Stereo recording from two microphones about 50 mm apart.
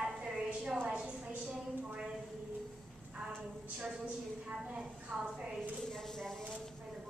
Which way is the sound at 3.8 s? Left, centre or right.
Right.